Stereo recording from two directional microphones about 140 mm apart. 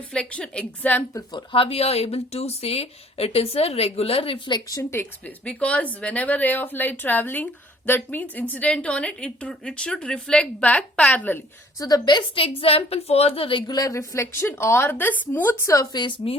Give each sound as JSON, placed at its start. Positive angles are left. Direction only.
{"t": 0.1, "sound": "a woman's voice", "side_deg": 5}
{"t": 1.1, "sound": "speech", "side_deg": 30}
{"t": 4.8, "sound": "a woman's voice", "side_deg": 15}
{"t": 11.9, "sound": "a woman's voice", "side_deg": 30}